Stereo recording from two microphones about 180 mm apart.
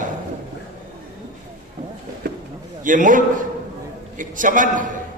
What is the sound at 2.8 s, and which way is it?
A man's voice, 45° right (ahead or behind).